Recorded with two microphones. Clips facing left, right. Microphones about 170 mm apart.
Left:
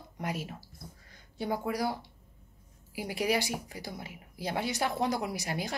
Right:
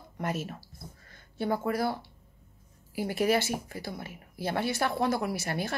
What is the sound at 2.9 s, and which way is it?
A woman's voice, 15° left (ahead or behind).